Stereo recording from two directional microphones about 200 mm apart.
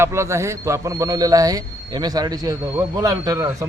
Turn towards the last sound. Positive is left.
turn(degrees=-15)  # may be behind; listen again after turning